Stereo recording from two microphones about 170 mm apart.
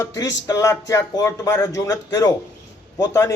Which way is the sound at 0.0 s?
20° left (ahead or behind).